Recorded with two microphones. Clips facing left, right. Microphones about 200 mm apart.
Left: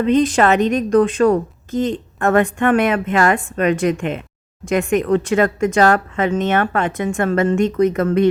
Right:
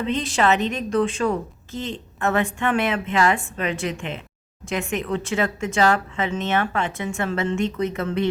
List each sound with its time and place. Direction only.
0.0 s a woman's voice: 50° left (ahead or behind)